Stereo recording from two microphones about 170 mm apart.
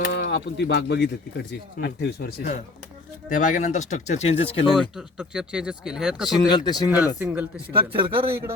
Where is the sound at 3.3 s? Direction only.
50° left (ahead or behind).